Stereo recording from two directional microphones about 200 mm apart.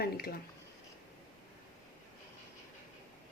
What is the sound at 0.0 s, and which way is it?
Speech, 50° left (ahead or behind).